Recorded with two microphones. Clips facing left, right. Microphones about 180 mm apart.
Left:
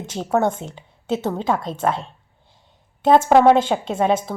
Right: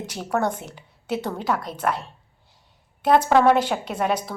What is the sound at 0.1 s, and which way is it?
Speech, 25° left (ahead or behind).